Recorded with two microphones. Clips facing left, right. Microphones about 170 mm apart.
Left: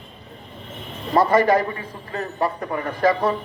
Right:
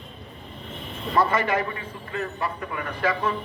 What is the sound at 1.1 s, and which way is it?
A man's voice, 40° left (ahead or behind).